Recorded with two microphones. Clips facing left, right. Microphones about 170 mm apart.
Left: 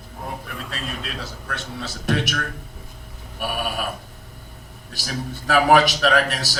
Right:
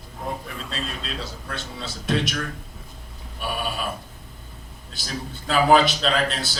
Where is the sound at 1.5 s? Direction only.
65° left (ahead or behind).